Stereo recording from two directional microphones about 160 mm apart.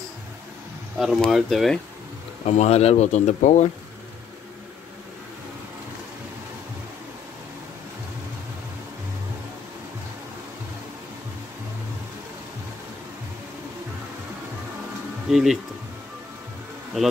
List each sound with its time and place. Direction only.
0.9 s speech: centre (ahead or behind)
2.4 s speech: 45° left (ahead or behind)
15.2 s speech: centre (ahead or behind)
17.0 s speech: centre (ahead or behind)